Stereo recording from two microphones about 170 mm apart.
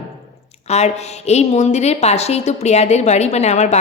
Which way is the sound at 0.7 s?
40° left (ahead or behind).